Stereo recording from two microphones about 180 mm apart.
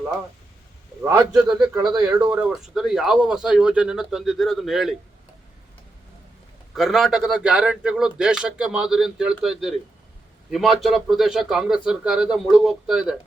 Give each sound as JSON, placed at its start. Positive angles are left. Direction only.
{"t": 1.0, "sound": "a man's voice", "side_deg": -10}
{"t": 6.7, "sound": "speech", "side_deg": 0}